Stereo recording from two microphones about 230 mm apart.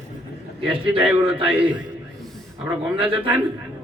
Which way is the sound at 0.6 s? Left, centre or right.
Right.